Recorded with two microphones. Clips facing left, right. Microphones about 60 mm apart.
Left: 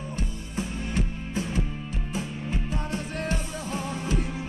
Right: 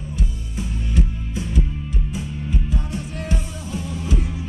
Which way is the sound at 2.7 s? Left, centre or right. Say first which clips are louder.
Right 2 dB; left.